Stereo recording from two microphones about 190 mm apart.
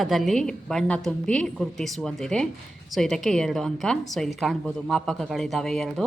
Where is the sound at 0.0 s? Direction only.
Centre (ahead or behind).